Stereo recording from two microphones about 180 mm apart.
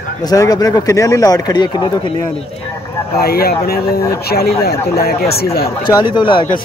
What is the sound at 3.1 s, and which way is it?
Speech, 60° left (ahead or behind).